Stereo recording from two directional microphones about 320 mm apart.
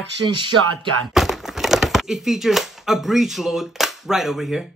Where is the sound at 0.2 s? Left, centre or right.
Right.